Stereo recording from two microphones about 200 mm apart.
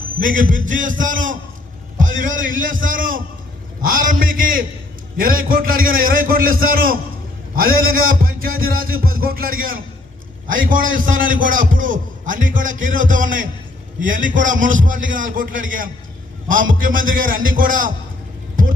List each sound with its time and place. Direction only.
0.2 s a man's voice: 40° right (ahead or behind)
3.8 s music: 45° right (ahead or behind)
10.5 s a man's voice: 45° right (ahead or behind)
16.7 s music: 45° right (ahead or behind)